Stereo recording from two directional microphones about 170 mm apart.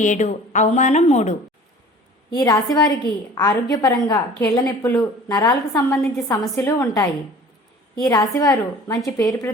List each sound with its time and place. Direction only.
0.0 s a woman's voice: 45° left (ahead or behind)
2.3 s a woman's voice: 20° left (ahead or behind)